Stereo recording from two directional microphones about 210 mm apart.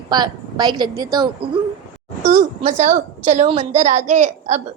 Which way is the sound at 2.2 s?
35° right (ahead or behind).